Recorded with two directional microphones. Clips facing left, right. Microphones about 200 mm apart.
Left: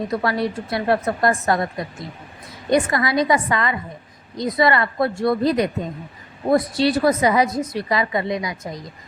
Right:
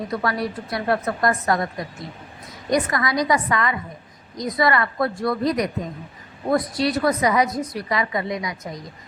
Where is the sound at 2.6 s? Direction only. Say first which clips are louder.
Left 3 dB; 25° left (ahead or behind).